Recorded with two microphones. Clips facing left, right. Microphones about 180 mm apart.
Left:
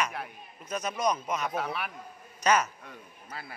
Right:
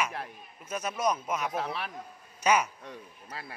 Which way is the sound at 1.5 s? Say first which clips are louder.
Left 1 dB; 30° right (ahead or behind).